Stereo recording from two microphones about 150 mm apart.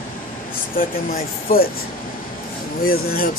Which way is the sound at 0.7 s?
75° left (ahead or behind).